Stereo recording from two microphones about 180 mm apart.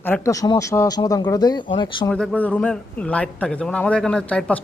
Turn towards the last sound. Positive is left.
turn(degrees=5)  # may be behind; listen again after turning